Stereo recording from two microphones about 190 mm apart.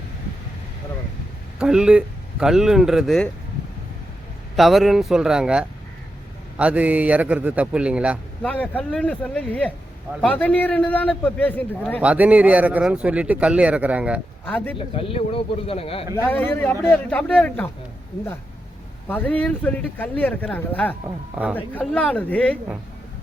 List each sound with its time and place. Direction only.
1.5 s speech: 5° right (ahead or behind)
4.5 s a man's voice: centre (ahead or behind)
8.4 s speech: 5° left (ahead or behind)
12.0 s a man's voice: 10° right (ahead or behind)
14.4 s speech: 10° left (ahead or behind)
14.8 s speech: 30° left (ahead or behind)
16.1 s speech: 10° left (ahead or behind)
19.0 s speech: 10° left (ahead or behind)